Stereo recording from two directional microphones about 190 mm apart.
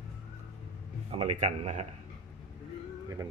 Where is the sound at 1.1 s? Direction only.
35° right (ahead or behind).